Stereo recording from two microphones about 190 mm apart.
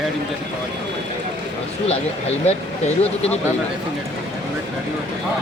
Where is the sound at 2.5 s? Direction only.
35° left (ahead or behind).